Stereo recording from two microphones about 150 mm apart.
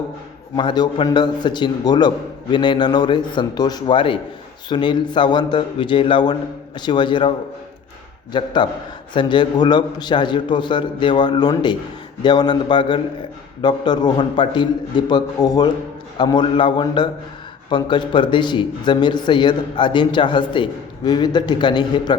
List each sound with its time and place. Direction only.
0.5 s a man's voice: 30° left (ahead or behind)